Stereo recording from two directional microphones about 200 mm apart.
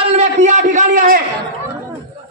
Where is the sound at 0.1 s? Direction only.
35° right (ahead or behind).